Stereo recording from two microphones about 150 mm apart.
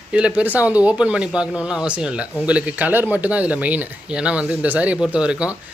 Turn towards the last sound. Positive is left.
turn(degrees=-5)  # may be behind; listen again after turning